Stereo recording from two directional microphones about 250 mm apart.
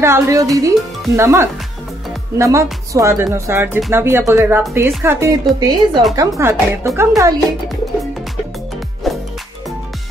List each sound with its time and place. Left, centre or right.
0.0 s speech: centre
9.1 s music: centre